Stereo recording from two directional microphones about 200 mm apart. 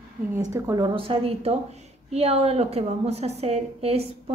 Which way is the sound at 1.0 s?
30° right (ahead or behind).